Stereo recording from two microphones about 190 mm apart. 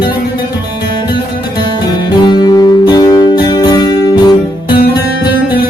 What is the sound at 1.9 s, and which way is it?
Music, 25° left (ahead or behind).